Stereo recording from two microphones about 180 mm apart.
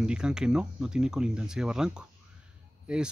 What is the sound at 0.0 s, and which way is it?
Speech, 5° right (ahead or behind).